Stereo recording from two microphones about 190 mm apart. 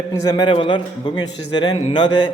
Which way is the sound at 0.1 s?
20° left (ahead or behind).